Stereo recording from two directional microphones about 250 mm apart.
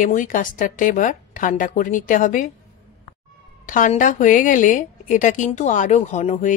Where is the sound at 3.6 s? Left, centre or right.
Left.